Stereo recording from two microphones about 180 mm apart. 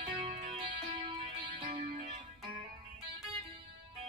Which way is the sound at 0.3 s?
30° right (ahead or behind).